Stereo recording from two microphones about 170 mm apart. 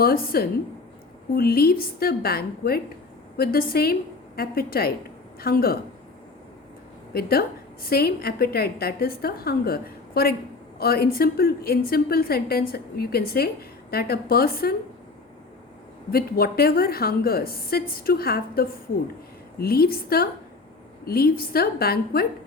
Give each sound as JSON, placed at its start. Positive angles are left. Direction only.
{"t": 0.0, "sound": "a woman's voice", "side_deg": 60}
{"t": 7.1, "sound": "a woman's voice", "side_deg": 65}
{"t": 16.1, "sound": "a woman's voice", "side_deg": 65}